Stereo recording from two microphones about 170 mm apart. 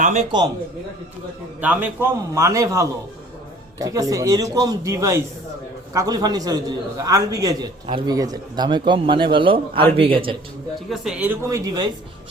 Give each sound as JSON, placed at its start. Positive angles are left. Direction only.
{"t": 0.0, "sound": "a man's voice", "side_deg": -45}
{"t": 1.6, "sound": "a man's voice", "side_deg": -10}
{"t": 10.8, "sound": "a man's voice", "side_deg": 0}